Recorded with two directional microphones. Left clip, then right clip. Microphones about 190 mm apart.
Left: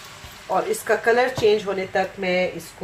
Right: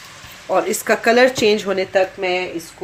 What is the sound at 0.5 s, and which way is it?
Speech, 50° right (ahead or behind).